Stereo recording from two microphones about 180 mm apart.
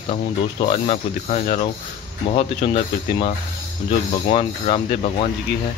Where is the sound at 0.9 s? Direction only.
40° left (ahead or behind).